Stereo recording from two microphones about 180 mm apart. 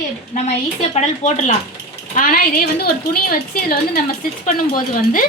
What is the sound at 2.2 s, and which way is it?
A woman's voice, 55° left (ahead or behind).